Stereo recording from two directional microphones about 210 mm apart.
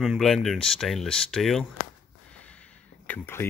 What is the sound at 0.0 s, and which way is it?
Speech, centre (ahead or behind).